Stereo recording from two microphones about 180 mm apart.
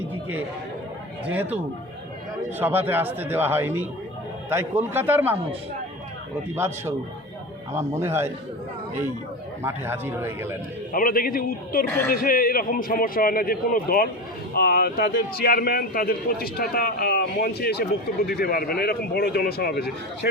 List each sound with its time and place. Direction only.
0.1 s chatter: 10° right (ahead or behind)
2.6 s a man's voice: 10° right (ahead or behind)
6.6 s a man's voice: 15° right (ahead or behind)
9.6 s a man's voice: 15° right (ahead or behind)
10.9 s a man's voice: 50° left (ahead or behind)
11.9 s speech: 10° left (ahead or behind)
12.1 s a man's voice: 50° left (ahead or behind)